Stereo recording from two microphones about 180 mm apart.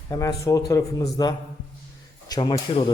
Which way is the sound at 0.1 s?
20° left (ahead or behind).